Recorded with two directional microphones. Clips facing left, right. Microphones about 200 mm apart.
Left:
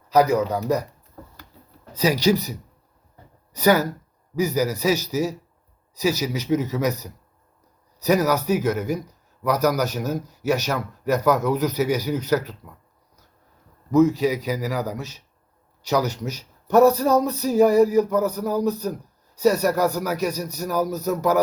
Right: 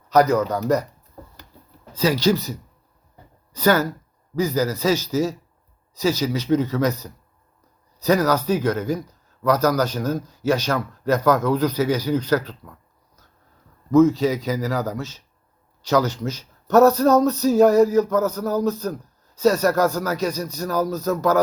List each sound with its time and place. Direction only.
0.2 s speech: 15° left (ahead or behind)
2.0 s speech: 15° left (ahead or behind)
3.6 s speech: 15° left (ahead or behind)
6.0 s speech: 15° left (ahead or behind)
8.0 s speech: 15° left (ahead or behind)
13.9 s speech: 15° left (ahead or behind)